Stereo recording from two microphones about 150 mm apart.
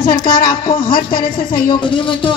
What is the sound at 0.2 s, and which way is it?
Speech, 70° left (ahead or behind).